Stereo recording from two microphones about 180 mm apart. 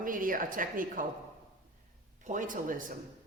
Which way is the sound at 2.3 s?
45° right (ahead or behind).